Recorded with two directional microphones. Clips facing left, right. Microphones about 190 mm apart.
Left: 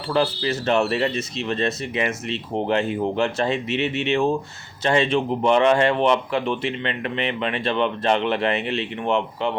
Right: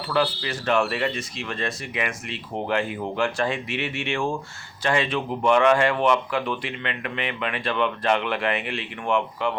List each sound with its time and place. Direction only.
0.1 s speech: 25° left (ahead or behind)